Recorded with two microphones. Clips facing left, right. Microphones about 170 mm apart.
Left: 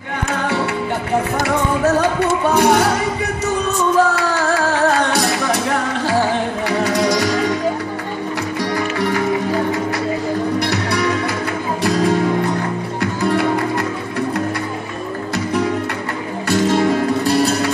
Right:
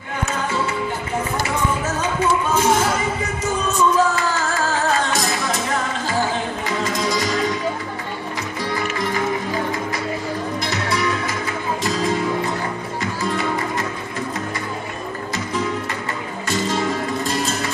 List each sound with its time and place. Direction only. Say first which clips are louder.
1.4 s music: left 6 dB; 65° left (ahead or behind)
6.8 s music: left 6 dB; 70° left (ahead or behind)
8.7 s music: left 4 dB; 75° left (ahead or behind)
10.6 s music: left 4 dB; 70° left (ahead or behind)
16.4 s music: left 7 dB; 65° left (ahead or behind)